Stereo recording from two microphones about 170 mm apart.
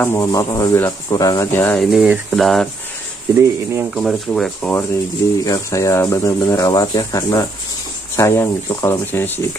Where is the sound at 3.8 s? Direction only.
Centre (ahead or behind).